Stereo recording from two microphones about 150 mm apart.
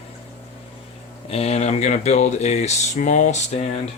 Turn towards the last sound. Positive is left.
turn(degrees=50)  # may be behind; listen again after turning